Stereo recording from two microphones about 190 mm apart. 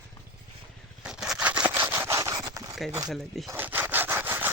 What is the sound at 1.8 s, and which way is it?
Rub, 15° right (ahead or behind).